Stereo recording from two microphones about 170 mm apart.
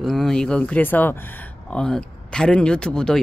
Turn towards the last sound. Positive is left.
turn(degrees=5)  # may be behind; listen again after turning